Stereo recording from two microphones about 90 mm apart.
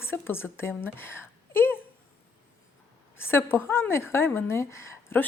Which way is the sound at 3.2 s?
25° left (ahead or behind).